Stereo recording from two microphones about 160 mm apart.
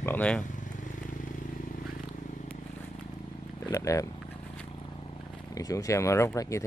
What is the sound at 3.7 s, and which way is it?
Speech, 20° left (ahead or behind).